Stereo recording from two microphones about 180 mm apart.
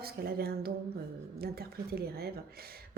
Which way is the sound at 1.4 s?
60° right (ahead or behind).